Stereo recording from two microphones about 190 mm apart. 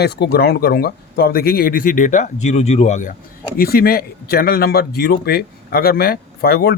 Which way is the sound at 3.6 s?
50° left (ahead or behind).